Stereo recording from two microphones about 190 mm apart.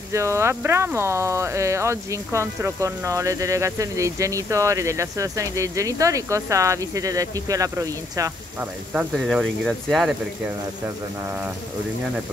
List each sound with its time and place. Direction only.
0.1 s speech: 15° right (ahead or behind)
8.9 s speech: centre (ahead or behind)